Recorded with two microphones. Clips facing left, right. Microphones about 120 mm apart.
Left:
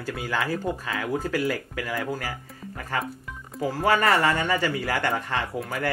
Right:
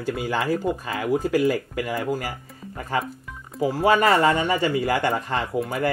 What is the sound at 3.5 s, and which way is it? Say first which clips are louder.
Speech: right 4 dB; 15° right (ahead or behind).